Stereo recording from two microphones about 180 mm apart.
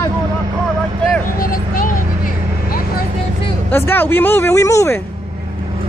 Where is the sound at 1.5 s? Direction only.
50° left (ahead or behind).